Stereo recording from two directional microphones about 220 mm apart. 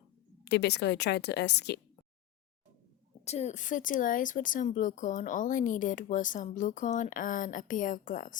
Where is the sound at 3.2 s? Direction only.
30° left (ahead or behind).